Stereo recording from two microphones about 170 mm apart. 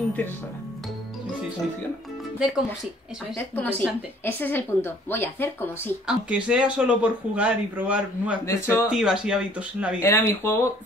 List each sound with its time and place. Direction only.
2.3 s speech: 5° right (ahead or behind)
3.3 s a woman's voice: 10° left (ahead or behind)
6.0 s speech: 5° right (ahead or behind)
8.5 s a woman's voice: 15° left (ahead or behind)
8.8 s speech: 5° right (ahead or behind)
10.0 s a woman's voice: 15° left (ahead or behind)